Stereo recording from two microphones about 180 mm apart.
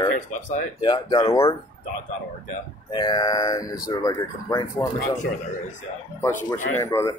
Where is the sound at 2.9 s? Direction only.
25° left (ahead or behind).